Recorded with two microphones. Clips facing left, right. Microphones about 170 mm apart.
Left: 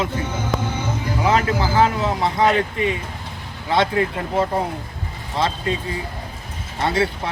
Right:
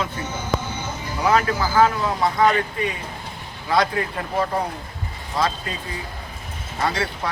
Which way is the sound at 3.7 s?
25° left (ahead or behind).